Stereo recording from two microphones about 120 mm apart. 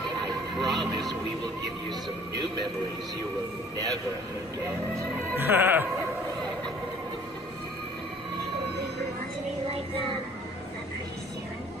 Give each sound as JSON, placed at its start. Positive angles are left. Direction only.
{"t": 0.6, "sound": "music", "side_deg": 0}
{"t": 5.3, "sound": "music", "side_deg": -15}